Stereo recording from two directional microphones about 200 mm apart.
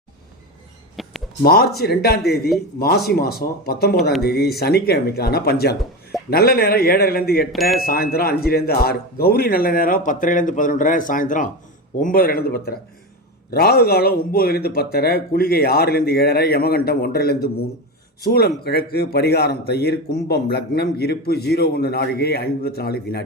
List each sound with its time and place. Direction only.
1.0 s a sound: centre (ahead or behind)
1.4 s speech: 50° left (ahead or behind)
7.5 s speech: centre (ahead or behind)
7.8 s speech: 50° left (ahead or behind)